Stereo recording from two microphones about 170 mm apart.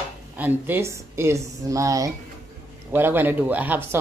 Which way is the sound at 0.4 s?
10° right (ahead or behind).